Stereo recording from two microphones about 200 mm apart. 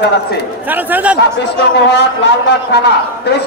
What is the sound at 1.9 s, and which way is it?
Speech, 60° left (ahead or behind).